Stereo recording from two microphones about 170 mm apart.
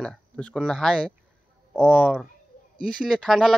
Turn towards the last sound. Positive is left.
turn(degrees=0)  # may be behind; listen again after turning